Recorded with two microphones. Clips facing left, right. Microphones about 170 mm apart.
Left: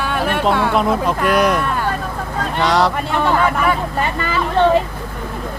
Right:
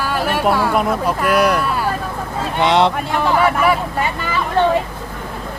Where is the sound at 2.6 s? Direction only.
25° right (ahead or behind).